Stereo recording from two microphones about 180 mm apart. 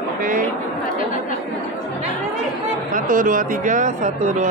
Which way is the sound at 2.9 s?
50° right (ahead or behind).